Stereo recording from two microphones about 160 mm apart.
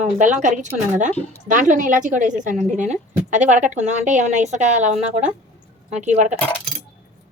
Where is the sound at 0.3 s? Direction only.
50° right (ahead or behind).